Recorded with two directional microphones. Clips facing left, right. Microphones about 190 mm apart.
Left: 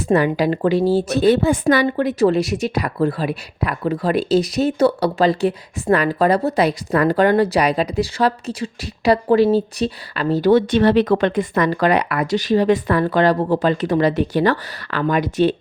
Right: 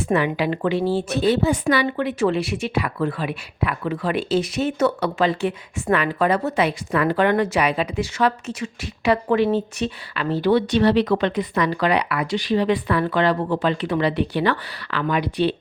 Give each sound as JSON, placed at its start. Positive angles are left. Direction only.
{"t": 0.0, "sound": "a woman's voice", "side_deg": 40}